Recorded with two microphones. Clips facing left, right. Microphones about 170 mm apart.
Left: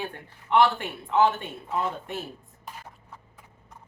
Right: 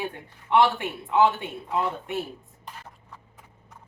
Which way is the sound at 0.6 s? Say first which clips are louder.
Even; 15° right (ahead or behind).